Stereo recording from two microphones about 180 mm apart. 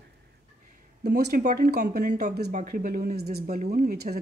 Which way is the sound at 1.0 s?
65° right (ahead or behind).